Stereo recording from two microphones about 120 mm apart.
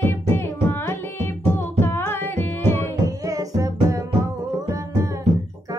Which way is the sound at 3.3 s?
30° right (ahead or behind).